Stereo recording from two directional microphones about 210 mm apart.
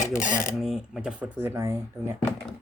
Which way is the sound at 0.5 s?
Centre (ahead or behind).